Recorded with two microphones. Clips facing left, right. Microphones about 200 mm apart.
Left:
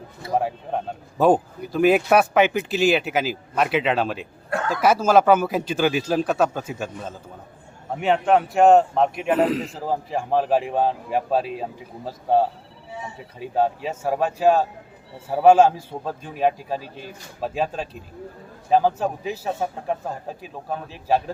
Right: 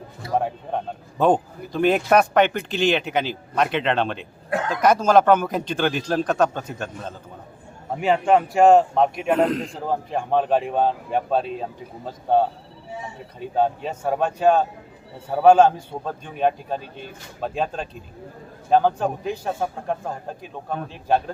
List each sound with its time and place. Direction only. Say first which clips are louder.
0.3 s a man's voice: even; 5° left (ahead or behind)
4.4 s speech: right 1 dB; 20° right (ahead or behind)
4.7 s a man's voice: even; 5° left (ahead or behind)